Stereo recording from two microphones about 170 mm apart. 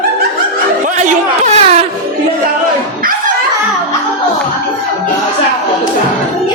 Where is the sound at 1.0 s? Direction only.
45° right (ahead or behind).